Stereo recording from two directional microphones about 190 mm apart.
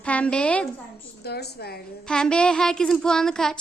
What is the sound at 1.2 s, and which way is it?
Speech, 60° left (ahead or behind).